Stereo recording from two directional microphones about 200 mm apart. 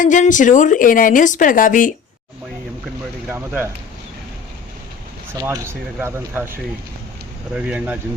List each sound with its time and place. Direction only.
0.0 s speech: 40° left (ahead or behind)
3.2 s speech: 10° right (ahead or behind)
5.3 s speech: 15° right (ahead or behind)